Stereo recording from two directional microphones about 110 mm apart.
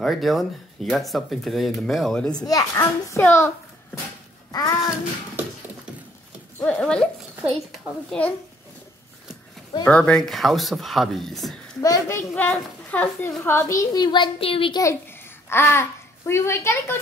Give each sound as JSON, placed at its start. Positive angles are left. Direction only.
{"t": 0.0, "sound": "speech", "side_deg": 0}
{"t": 2.3, "sound": "a child's voice", "side_deg": 35}
{"t": 4.5, "sound": "a child's voice", "side_deg": 35}
{"t": 6.6, "sound": "speech", "side_deg": 10}
{"t": 9.8, "sound": "speech", "side_deg": 10}
{"t": 11.8, "sound": "speech", "side_deg": 30}
{"t": 12.2, "sound": "a child's voice", "side_deg": 20}
{"t": 13.4, "sound": "speech", "side_deg": 25}
{"t": 14.7, "sound": "speech", "side_deg": 30}
{"t": 15.5, "sound": "a child's voice", "side_deg": 20}